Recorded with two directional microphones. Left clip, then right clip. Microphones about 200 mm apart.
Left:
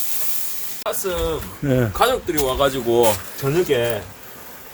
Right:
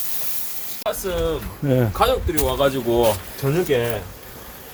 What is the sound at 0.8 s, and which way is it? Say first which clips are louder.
Speech: even; 15° left (ahead or behind).